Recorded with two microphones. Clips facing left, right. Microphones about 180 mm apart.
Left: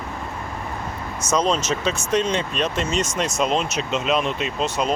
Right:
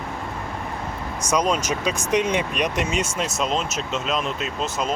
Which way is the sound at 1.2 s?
10° right (ahead or behind).